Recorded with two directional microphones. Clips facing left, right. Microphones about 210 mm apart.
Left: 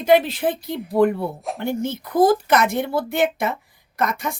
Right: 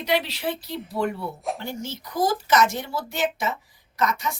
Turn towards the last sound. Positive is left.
turn(degrees=55)  # may be behind; listen again after turning